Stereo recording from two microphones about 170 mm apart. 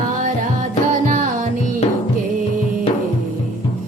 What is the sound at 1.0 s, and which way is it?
Music, 50° right (ahead or behind).